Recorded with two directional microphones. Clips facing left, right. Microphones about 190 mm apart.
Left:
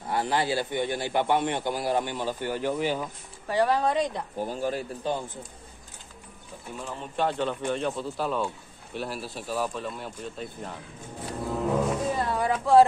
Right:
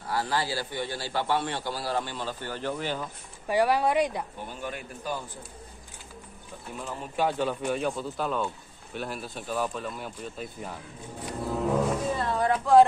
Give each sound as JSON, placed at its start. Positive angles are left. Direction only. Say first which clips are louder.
{"t": 0.0, "sound": "a man's voice", "louder": "left 2 dB", "side_deg": 20}
{"t": 3.4, "sound": "speech", "louder": "even", "side_deg": -10}
{"t": 4.4, "sound": "speech", "louder": "left 7 dB", "side_deg": 40}
{"t": 6.8, "sound": "speech", "louder": "even", "side_deg": -5}
{"t": 11.4, "sound": "music", "louder": "even", "side_deg": 0}
{"t": 12.2, "sound": "a sound", "louder": "even", "side_deg": 10}